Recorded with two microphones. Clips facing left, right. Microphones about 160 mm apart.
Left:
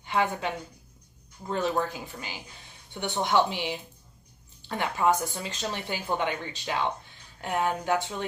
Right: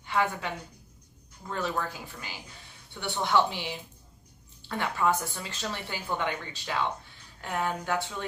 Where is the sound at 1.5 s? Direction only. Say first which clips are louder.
Left 4 dB; 20° left (ahead or behind).